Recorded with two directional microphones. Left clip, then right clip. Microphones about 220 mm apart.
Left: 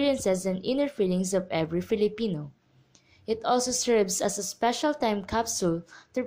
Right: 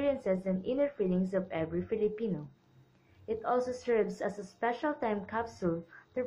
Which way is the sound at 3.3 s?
45° left (ahead or behind).